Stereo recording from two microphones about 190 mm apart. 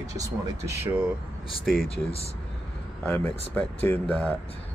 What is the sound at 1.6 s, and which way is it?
Speech, centre (ahead or behind).